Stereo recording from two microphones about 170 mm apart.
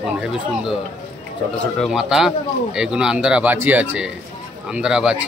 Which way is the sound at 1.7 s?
Centre (ahead or behind).